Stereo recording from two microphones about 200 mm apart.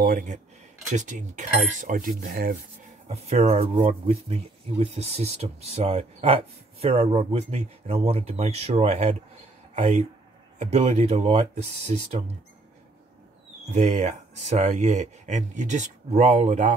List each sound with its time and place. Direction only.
0.0 s speech: 40° right (ahead or behind)
1.8 s cutlery: 45° right (ahead or behind)
3.1 s speech: 30° right (ahead or behind)
13.7 s speech: 35° right (ahead or behind)